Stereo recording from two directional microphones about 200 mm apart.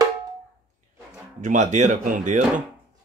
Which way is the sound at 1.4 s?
40° right (ahead or behind).